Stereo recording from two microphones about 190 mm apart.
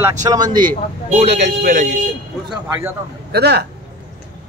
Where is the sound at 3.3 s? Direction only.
60° right (ahead or behind).